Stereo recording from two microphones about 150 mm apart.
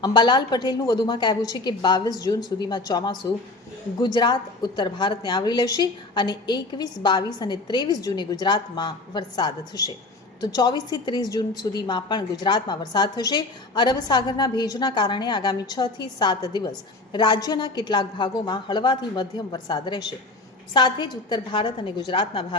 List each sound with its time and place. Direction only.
0.0 s a woman's voice: 30° left (ahead or behind)